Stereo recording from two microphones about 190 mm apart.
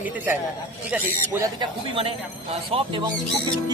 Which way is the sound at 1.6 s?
30° right (ahead or behind).